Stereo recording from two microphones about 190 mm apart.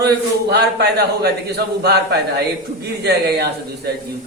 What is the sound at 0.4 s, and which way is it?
A man's voice, 60° right (ahead or behind).